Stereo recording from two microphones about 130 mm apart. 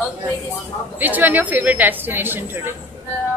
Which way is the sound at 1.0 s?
15° right (ahead or behind).